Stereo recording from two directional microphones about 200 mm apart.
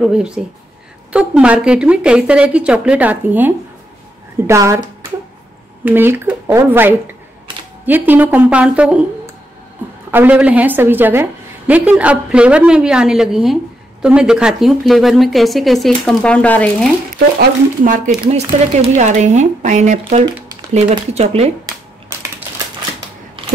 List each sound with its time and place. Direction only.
0.0 s a woman's voice: 5° right (ahead or behind)
5.9 s a woman's voice: 10° right (ahead or behind); by 16.9 s 5° left (ahead or behind)
17.4 s speech: 45° right (ahead or behind)
18.2 s speech: 30° right (ahead or behind)